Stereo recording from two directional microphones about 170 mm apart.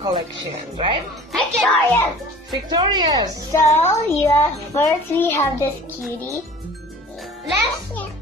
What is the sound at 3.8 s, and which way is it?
A child's voice, 15° left (ahead or behind).